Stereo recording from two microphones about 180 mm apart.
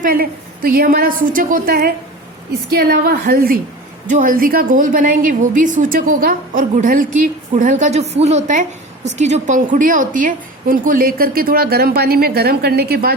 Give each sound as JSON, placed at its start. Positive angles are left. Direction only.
{"t": 0.0, "sound": "a woman's voice", "side_deg": -55}